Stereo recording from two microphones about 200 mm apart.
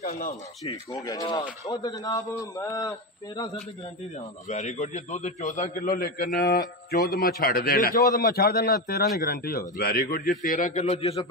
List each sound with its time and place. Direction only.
0.0 s a sound: 50° left (ahead or behind)
0.9 s a man's voice: 20° left (ahead or behind)
4.5 s a man's voice: 35° left (ahead or behind); by 10.3 s 50° left (ahead or behind)
10.6 s a man's voice: 35° left (ahead or behind)